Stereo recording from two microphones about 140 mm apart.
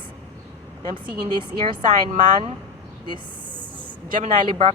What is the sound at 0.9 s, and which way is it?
Speech, 35° right (ahead or behind).